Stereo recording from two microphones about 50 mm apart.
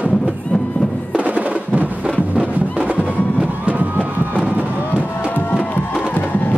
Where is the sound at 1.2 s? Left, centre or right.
Right.